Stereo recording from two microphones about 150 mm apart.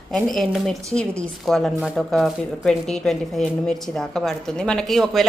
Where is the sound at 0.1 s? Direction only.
Centre (ahead or behind).